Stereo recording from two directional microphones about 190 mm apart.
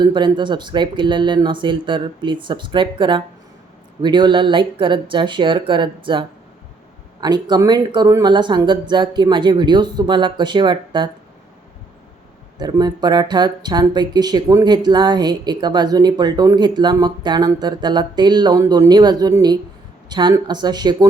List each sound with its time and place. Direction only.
0.0 s speech: 25° right (ahead or behind)
12.5 s speech: 20° right (ahead or behind)